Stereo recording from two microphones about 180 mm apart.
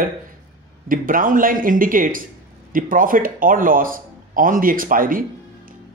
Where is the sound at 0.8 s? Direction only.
50° right (ahead or behind).